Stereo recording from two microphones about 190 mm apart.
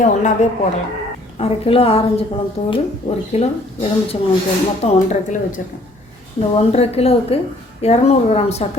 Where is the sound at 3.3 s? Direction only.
30° left (ahead or behind).